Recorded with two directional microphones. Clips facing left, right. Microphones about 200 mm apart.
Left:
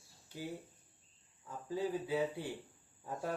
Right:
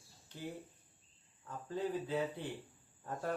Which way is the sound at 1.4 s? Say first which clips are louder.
Left 1 dB; 10° left (ahead or behind).